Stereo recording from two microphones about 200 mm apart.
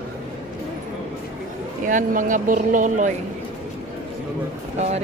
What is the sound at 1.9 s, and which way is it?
Speech, 40° right (ahead or behind).